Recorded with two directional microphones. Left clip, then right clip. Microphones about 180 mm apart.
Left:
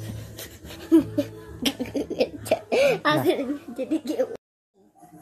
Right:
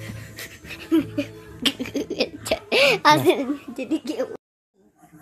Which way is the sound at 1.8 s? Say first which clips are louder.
Even; 35° right (ahead or behind).